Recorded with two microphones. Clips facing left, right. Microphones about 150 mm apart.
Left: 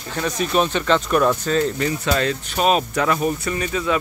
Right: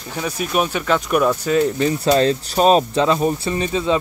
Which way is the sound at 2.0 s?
35° right (ahead or behind).